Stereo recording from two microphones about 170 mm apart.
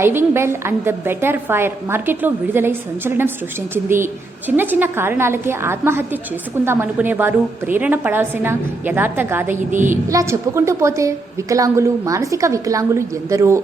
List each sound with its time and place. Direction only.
0.0 s a woman's voice: 15° right (ahead or behind)
9.6 s a woman's voice: 50° right (ahead or behind)
10.1 s a woman's voice: 15° right (ahead or behind)